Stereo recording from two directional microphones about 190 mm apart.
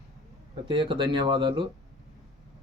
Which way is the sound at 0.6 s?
25° right (ahead or behind).